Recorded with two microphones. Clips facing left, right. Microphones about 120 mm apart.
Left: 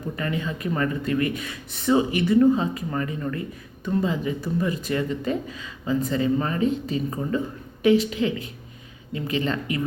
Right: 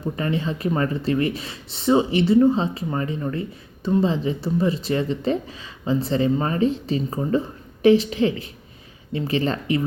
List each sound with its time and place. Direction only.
0.0 s speech: 30° right (ahead or behind)